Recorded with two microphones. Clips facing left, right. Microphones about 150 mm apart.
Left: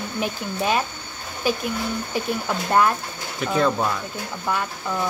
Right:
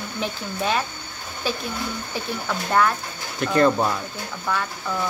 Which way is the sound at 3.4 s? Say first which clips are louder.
Right 3 dB; 5° left (ahead or behind).